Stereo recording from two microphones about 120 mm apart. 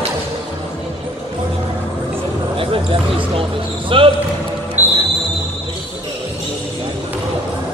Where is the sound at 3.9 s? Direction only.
50° right (ahead or behind).